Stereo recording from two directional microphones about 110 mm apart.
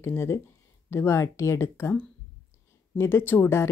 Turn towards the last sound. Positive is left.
turn(degrees=20)  # may be behind; listen again after turning